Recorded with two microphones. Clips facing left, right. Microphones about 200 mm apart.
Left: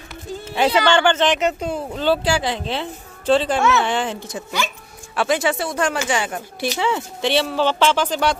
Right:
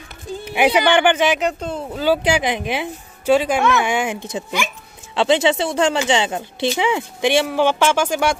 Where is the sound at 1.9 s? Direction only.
5° right (ahead or behind).